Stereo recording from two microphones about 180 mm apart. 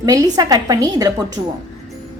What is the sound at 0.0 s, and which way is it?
A woman's voice, 20° right (ahead or behind).